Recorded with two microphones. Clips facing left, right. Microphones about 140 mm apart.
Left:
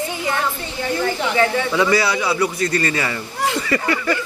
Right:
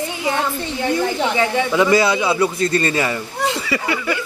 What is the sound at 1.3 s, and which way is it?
A man's voice, 15° right (ahead or behind).